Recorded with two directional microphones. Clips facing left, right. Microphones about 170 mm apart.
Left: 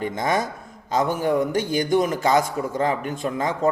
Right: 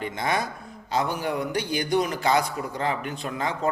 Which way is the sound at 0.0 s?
45° left (ahead or behind).